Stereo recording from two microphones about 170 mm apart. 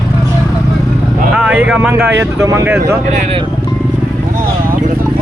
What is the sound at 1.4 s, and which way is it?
Speech, 5° right (ahead or behind).